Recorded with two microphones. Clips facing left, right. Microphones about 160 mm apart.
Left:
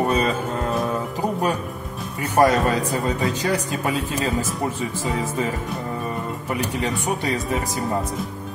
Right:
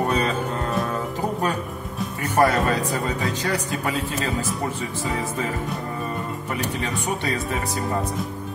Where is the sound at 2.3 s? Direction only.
10° left (ahead or behind).